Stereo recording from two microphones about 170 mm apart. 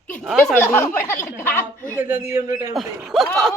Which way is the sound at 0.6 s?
10° left (ahead or behind).